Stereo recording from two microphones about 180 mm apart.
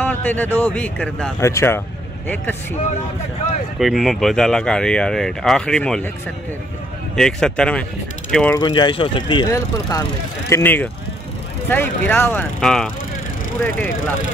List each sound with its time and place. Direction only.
0.0 s speech: 10° left (ahead or behind)
3.8 s speech: centre (ahead or behind)
7.2 s speech: 5° left (ahead or behind)
8.3 s mechanisms: 5° left (ahead or behind)
8.5 s speech: 25° left (ahead or behind)